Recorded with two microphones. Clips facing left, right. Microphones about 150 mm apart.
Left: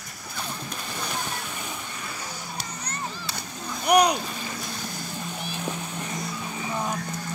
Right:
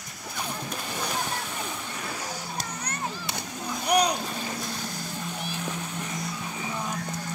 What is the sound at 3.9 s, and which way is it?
Boat, 70° left (ahead or behind).